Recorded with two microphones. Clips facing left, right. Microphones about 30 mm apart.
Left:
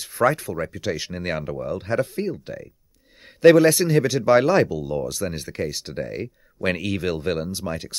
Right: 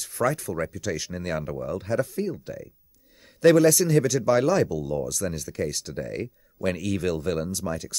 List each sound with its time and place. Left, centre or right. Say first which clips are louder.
0.0 s speech: left 5 dB; left
3.3 s speech: left 4 dB; left